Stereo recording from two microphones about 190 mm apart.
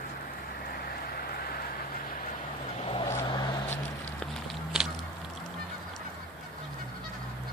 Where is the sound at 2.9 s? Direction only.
30° left (ahead or behind).